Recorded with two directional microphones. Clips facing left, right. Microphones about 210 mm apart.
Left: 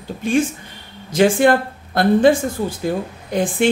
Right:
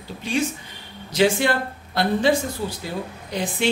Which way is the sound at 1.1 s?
50° left (ahead or behind).